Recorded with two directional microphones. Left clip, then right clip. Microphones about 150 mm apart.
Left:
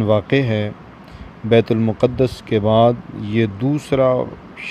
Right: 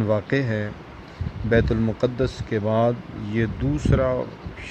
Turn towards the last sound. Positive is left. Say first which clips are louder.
# left 6 dB
turn(degrees=20)  # may be behind; listen again after turning